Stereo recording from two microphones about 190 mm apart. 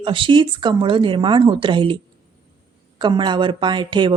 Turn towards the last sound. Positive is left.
turn(degrees=-25)  # may be behind; listen again after turning